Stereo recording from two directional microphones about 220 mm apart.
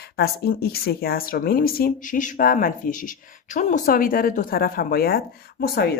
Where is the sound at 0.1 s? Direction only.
45° left (ahead or behind).